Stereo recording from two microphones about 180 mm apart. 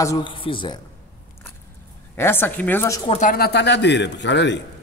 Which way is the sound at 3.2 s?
55° left (ahead or behind).